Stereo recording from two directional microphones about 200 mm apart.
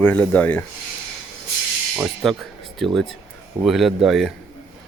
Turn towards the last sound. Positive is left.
turn(degrees=0)  # may be behind; listen again after turning